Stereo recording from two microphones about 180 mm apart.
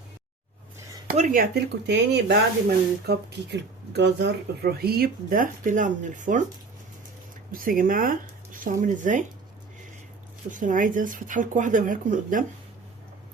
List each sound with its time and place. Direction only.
1.1 s speech: 45° right (ahead or behind)
1.9 s speech: 70° right (ahead or behind); by 6.4 s 45° right (ahead or behind)
7.5 s speech: 50° right (ahead or behind)
10.5 s speech: 45° right (ahead or behind)